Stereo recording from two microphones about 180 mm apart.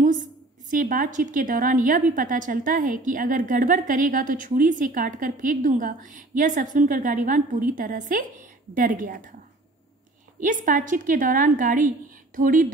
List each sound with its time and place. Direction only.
0.7 s a woman's voice: 50° right (ahead or behind)
10.4 s a woman's voice: 45° right (ahead or behind)